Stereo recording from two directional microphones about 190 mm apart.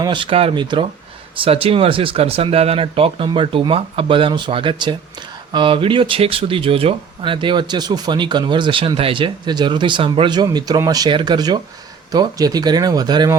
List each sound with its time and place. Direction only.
0.0 s speech: 25° right (ahead or behind)